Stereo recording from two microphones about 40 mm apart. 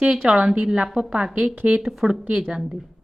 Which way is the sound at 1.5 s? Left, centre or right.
Right.